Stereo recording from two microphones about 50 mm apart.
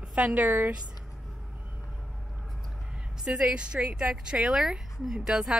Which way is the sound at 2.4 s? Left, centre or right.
Centre.